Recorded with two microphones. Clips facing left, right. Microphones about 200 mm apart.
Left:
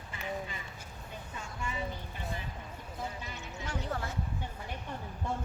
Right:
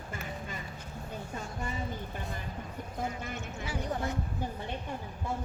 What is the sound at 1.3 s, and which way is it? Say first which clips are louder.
Speech: right 1 dB; 40° right (ahead or behind).